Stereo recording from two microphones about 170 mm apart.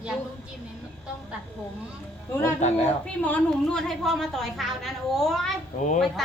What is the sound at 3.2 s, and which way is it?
A woman's voice, 5° left (ahead or behind).